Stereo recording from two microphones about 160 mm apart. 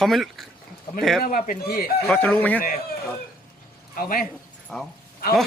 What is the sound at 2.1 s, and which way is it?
Speech, 10° left (ahead or behind).